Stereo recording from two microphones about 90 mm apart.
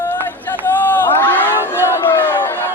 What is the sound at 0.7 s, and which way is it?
Crowd, 20° left (ahead or behind).